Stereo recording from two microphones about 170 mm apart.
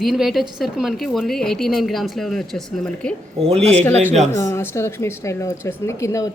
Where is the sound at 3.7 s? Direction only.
10° left (ahead or behind).